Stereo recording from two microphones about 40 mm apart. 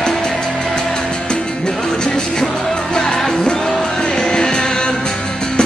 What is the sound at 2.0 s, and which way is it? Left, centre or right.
Music, left.